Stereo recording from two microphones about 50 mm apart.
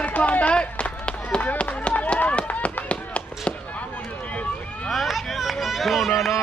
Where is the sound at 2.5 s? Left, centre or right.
Left.